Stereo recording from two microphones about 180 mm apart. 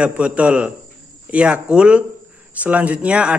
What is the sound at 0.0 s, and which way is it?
A man's voice, 5° right (ahead or behind).